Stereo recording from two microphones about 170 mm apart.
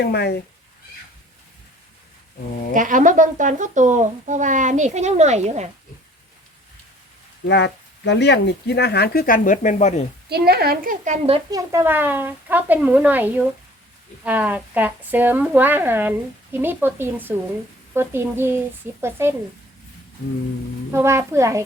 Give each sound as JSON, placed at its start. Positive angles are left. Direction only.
{"t": 0.0, "sound": "speech", "side_deg": 80}
{"t": 2.7, "sound": "speech", "side_deg": -50}
{"t": 7.4, "sound": "speech", "side_deg": 90}
{"t": 10.2, "sound": "a woman's voice", "side_deg": -70}
{"t": 11.5, "sound": "speech", "side_deg": -15}
{"t": 20.9, "sound": "speech", "side_deg": -15}